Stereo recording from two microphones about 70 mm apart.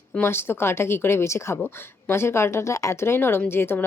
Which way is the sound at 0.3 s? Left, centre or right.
Left.